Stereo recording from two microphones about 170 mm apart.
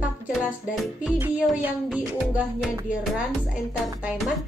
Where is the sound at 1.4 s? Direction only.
Centre (ahead or behind).